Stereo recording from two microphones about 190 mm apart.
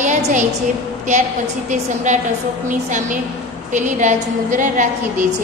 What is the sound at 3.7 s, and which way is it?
A woman's voice, 40° right (ahead or behind).